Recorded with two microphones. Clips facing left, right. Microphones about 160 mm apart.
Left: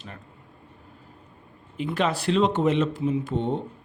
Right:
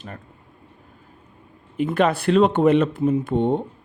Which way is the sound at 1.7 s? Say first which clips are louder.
Right 6 dB; 55° right (ahead or behind).